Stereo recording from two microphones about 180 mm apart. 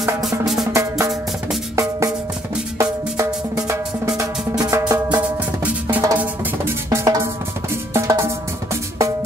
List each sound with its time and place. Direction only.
0.7 s music: 15° right (ahead or behind)
4.9 s drum: 10° right (ahead or behind)